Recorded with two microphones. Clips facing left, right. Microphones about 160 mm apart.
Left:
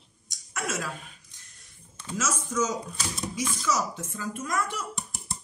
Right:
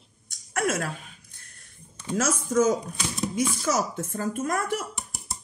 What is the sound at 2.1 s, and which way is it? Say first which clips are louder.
Speech: right 6 dB; 60° right (ahead or behind).